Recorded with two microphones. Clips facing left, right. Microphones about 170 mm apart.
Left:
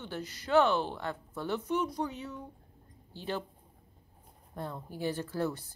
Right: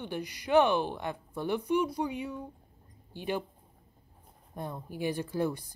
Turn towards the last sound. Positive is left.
turn(degrees=-15)  # may be behind; listen again after turning